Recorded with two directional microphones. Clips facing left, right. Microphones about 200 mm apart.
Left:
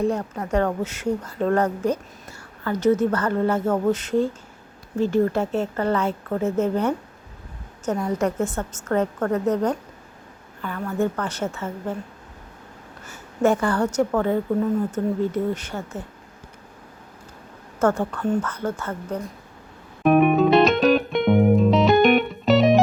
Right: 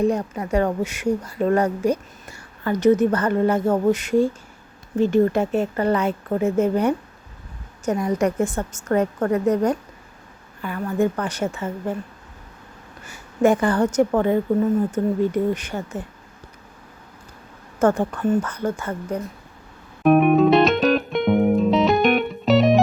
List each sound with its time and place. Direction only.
0.0 s a woman's voice: 15° right (ahead or behind)
13.1 s a woman's voice: 15° right (ahead or behind)
17.7 s a woman's voice: 15° right (ahead or behind)
20.0 s music: centre (ahead or behind)